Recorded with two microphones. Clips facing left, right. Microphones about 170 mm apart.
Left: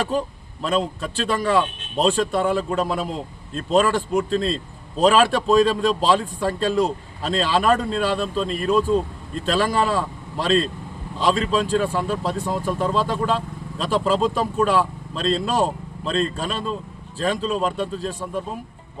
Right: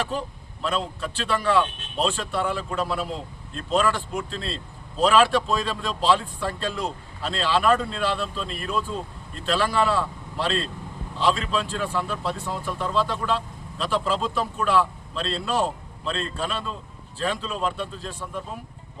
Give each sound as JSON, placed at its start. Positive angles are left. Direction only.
{"t": 0.6, "sound": "speech", "side_deg": 40}